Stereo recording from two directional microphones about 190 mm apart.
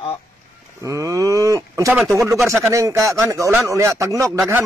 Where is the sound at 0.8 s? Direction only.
15° right (ahead or behind).